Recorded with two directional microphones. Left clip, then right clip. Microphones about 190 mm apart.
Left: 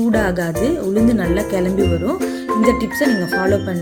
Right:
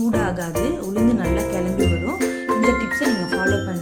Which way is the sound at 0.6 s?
Centre (ahead or behind).